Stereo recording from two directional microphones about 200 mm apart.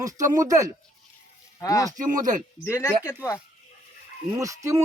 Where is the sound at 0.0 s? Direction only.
15° right (ahead or behind).